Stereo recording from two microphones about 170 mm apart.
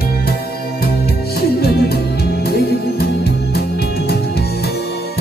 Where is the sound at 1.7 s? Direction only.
70° left (ahead or behind).